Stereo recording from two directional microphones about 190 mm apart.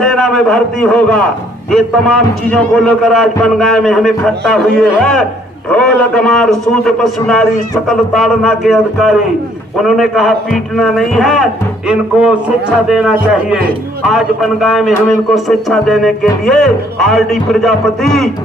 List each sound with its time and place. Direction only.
0.0 s a man's voice: centre (ahead or behind)